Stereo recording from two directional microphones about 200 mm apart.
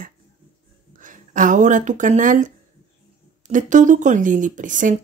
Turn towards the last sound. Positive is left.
turn(degrees=-40)  # may be behind; listen again after turning